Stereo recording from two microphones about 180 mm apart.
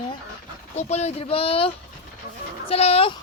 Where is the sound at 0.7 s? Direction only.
35° left (ahead or behind).